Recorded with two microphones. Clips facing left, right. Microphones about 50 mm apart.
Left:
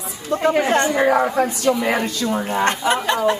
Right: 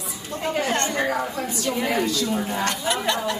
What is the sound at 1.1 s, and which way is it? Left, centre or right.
Speech, left.